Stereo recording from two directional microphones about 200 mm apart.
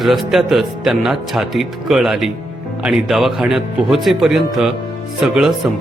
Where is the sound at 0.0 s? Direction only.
Centre (ahead or behind).